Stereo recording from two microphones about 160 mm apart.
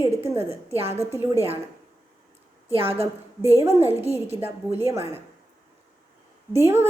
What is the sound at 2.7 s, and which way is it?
Speech, 35° right (ahead or behind).